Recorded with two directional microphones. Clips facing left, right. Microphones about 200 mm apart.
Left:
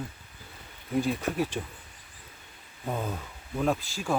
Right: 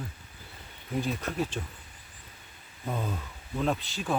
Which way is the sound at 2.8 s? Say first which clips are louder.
Left 1 dB; 10° left (ahead or behind).